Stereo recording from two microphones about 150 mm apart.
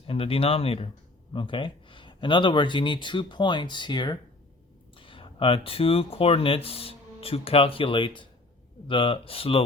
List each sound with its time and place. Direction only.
0.1 s speech: 40° left (ahead or behind)